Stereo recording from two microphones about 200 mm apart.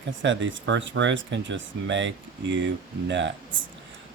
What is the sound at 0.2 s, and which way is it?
Speech, 65° right (ahead or behind).